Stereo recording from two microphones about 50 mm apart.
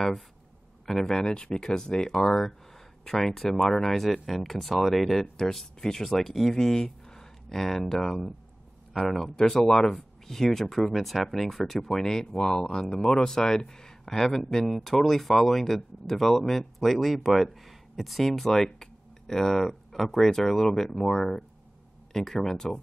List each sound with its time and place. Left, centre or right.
0.8 s speech: centre
1.2 s speech: centre